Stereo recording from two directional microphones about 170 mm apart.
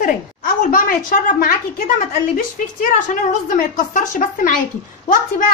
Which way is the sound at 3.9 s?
50° left (ahead or behind).